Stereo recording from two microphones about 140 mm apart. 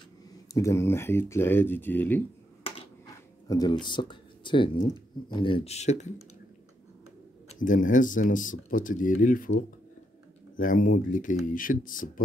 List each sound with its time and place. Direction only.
0.5 s speech: 20° left (ahead or behind)
3.4 s speech: 25° left (ahead or behind); by 6.1 s 55° left (ahead or behind)
7.4 s speech: 65° left (ahead or behind)
10.5 s speech: 75° left (ahead or behind)